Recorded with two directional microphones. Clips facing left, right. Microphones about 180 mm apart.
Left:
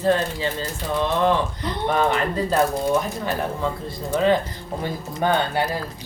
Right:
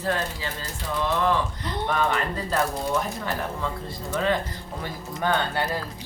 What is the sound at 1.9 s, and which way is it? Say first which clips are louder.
Speech: left 5 dB; 20° left (ahead or behind).